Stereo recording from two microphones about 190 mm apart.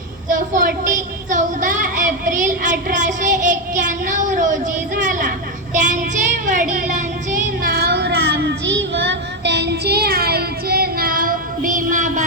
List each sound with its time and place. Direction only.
0.3 s a woman's voice: 45° right (ahead or behind)
5.7 s child singing: 40° right (ahead or behind)